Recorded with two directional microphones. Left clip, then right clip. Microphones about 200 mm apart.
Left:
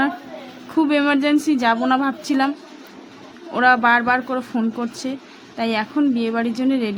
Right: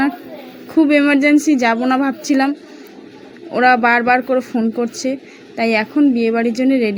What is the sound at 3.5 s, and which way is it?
A woman's voice, 10° right (ahead or behind).